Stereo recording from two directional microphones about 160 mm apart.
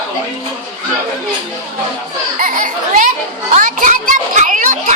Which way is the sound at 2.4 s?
60° right (ahead or behind).